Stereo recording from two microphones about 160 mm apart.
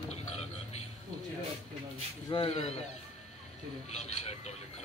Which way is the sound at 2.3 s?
35° left (ahead or behind).